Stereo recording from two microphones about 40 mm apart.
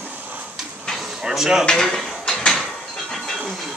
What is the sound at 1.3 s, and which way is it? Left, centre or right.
Speech, centre.